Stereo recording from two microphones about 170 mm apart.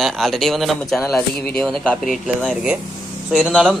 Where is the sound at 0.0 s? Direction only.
Centre (ahead or behind).